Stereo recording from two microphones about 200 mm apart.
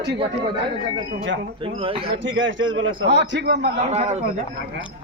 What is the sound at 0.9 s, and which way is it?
Speech, 70° right (ahead or behind).